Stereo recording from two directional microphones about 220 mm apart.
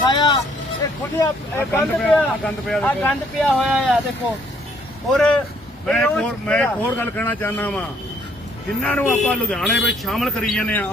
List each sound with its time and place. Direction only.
0.0 s speech: 20° left (ahead or behind)
1.2 s speech: 10° left (ahead or behind)
5.1 s speech: 5° left (ahead or behind)